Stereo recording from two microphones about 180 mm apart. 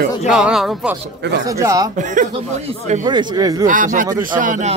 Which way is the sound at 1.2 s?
75° right (ahead or behind).